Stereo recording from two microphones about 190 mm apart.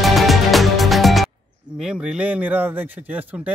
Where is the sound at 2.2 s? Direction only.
10° right (ahead or behind).